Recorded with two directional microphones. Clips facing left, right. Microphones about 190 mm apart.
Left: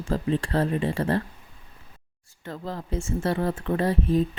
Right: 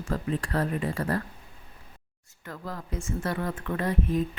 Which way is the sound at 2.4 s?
25° left (ahead or behind).